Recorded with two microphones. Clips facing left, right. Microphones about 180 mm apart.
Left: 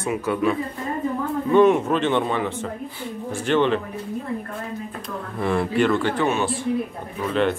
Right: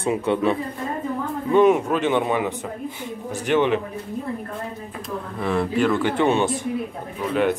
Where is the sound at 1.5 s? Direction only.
5° right (ahead or behind).